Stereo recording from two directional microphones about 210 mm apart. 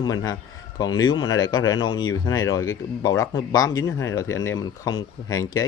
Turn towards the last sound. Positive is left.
turn(degrees=15)  # may be behind; listen again after turning